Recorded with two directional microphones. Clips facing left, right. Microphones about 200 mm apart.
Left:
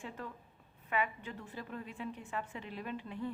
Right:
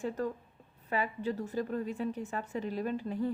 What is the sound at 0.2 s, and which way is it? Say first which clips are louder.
A woman's voice: right 11 dB; 40° right (ahead or behind).